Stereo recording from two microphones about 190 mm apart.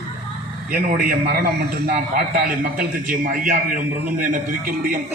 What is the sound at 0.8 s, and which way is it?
Speech, 50° right (ahead or behind).